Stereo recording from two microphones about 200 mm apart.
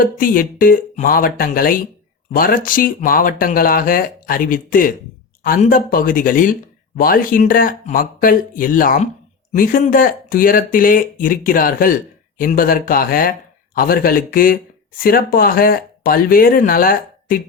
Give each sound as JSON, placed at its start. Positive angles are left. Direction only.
{"t": 0.0, "sound": "speech", "side_deg": 45}